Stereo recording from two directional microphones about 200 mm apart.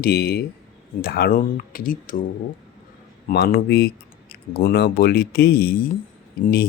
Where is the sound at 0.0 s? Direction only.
50° left (ahead or behind).